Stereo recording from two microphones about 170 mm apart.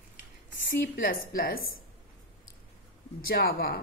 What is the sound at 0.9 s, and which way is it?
Speech, 60° left (ahead or behind).